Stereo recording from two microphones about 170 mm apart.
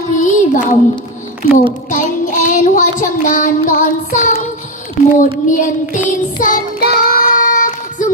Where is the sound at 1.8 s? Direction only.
45° left (ahead or behind).